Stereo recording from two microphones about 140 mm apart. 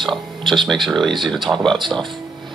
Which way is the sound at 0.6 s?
Centre (ahead or behind).